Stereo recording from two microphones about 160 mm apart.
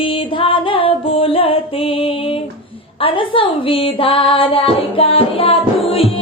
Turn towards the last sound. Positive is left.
turn(degrees=35)  # may be behind; listen again after turning